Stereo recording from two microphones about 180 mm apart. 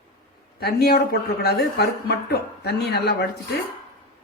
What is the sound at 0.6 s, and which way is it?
A woman's voice, 60° left (ahead or behind).